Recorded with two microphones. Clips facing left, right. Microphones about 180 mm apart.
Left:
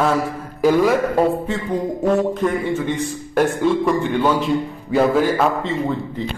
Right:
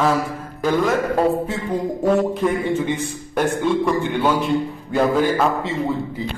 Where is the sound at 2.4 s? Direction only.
10° right (ahead or behind).